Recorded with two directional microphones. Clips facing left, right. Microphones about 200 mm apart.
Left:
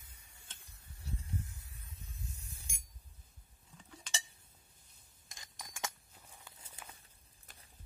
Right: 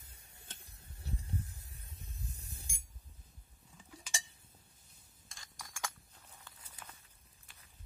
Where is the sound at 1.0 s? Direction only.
35° right (ahead or behind).